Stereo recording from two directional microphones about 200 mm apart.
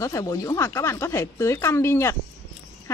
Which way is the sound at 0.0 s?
15° left (ahead or behind).